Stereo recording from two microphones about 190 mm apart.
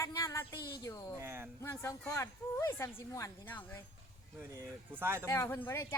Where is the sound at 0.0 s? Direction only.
15° left (ahead or behind).